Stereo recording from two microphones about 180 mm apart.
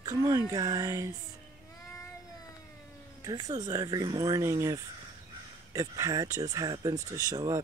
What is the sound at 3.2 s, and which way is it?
Speech, 20° right (ahead or behind).